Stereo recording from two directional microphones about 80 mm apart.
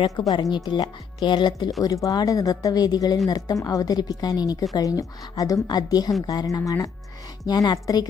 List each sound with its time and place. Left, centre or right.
0.3 s speech: left
1.8 s a woman's voice: left